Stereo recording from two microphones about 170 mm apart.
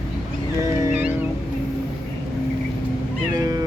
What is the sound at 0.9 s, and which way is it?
Music, 10° right (ahead or behind).